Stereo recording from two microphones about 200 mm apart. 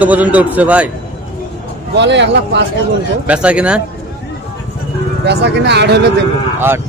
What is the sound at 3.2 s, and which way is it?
Speech, 5° right (ahead or behind).